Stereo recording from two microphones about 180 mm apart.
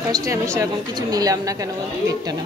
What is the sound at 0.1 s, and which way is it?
A woman's voice, 20° right (ahead or behind).